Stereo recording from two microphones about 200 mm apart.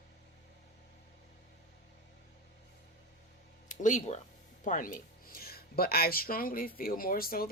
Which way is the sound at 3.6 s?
40° left (ahead or behind).